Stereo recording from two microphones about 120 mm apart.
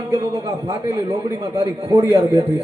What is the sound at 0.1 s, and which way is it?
A man's voice, 30° right (ahead or behind).